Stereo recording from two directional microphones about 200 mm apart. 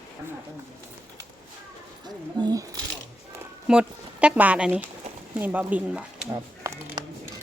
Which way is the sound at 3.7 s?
5° right (ahead or behind).